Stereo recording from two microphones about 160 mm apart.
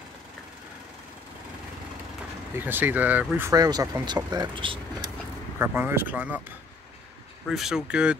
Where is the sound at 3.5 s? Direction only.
25° right (ahead or behind).